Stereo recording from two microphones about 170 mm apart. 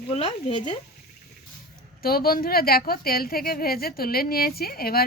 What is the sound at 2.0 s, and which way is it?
A woman's voice, 60° left (ahead or behind).